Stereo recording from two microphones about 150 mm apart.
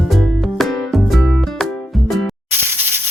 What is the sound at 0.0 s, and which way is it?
Music, centre (ahead or behind).